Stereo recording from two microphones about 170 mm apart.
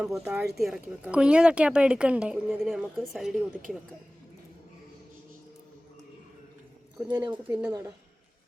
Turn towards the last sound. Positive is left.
turn(degrees=-25)  # may be behind; listen again after turning